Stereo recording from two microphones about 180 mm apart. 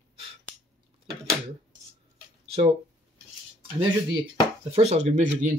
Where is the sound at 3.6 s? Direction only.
25° right (ahead or behind).